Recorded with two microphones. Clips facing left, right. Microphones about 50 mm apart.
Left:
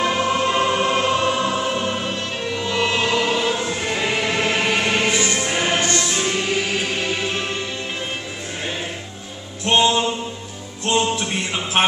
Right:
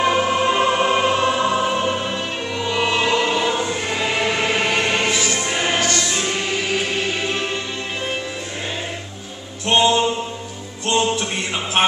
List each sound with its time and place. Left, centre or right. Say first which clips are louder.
0.0 s choir: right 2 dB; centre
5.3 s music: even; centre
5.8 s music: even; left
6.1 s music: left 1 dB; centre
9.7 s mantra: right 1 dB; centre
10.9 s a sound: even; centre